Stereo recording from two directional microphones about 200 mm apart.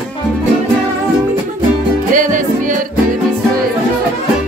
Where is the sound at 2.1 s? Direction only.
40° right (ahead or behind).